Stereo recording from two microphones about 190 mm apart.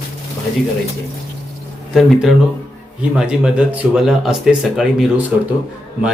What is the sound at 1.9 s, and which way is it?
Speech, centre (ahead or behind).